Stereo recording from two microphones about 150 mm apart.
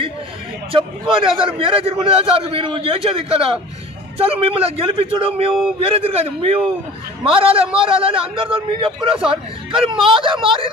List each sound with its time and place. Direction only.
0.7 s a man's voice: 35° right (ahead or behind)